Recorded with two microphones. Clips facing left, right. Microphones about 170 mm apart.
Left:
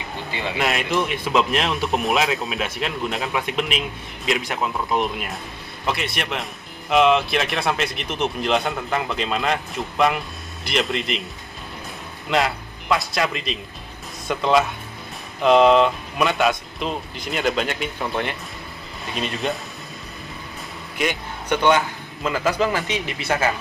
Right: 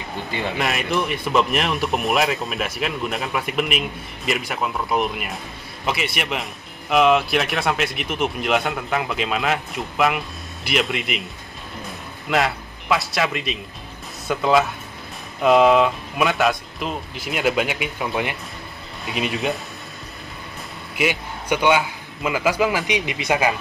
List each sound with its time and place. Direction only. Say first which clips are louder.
0.6 s speech: left 2 dB; centre (ahead or behind)
12.3 s speech: even; centre (ahead or behind)
21.0 s a man's voice: right 2 dB; 10° right (ahead or behind)